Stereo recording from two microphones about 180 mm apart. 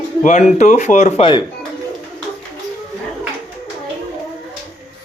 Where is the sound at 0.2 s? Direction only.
45° left (ahead or behind).